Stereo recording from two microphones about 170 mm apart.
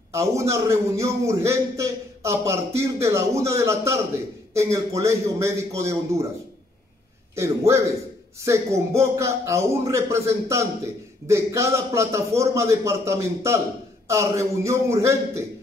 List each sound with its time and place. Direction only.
0.1 s a man's voice: 15° right (ahead or behind)
7.3 s a man's voice: 15° right (ahead or behind)